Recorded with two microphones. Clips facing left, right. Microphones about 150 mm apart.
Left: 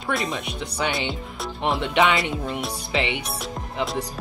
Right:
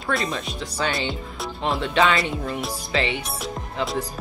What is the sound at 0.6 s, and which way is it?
Speech, 20° left (ahead or behind).